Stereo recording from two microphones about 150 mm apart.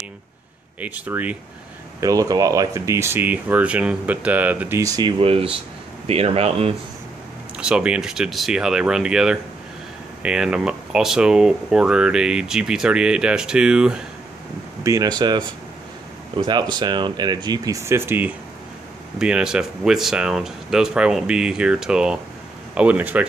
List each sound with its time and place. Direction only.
0.7 s speech: 10° right (ahead or behind)
2.0 s speech: 25° right (ahead or behind)
5.2 s speech: 40° right (ahead or behind)
7.5 s speech: 5° right (ahead or behind)
14.8 s speech: 20° right (ahead or behind)
19.1 s speech: 5° right (ahead or behind)